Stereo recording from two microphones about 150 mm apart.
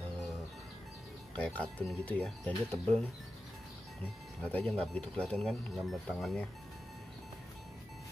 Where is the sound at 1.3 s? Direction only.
5° left (ahead or behind).